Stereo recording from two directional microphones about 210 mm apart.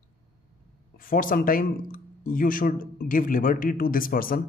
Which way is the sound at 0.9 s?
40° left (ahead or behind).